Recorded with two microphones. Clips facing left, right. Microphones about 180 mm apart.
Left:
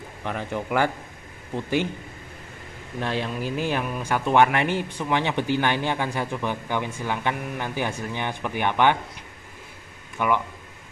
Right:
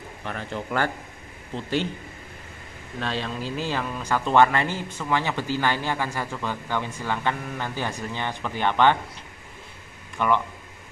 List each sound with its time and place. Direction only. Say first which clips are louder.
0.2 s a man's voice: left 3 dB; 15° left (ahead or behind)
3.0 s a man's voice: left 2 dB; 15° left (ahead or behind)
10.1 s speech: right 1 dB; 10° left (ahead or behind)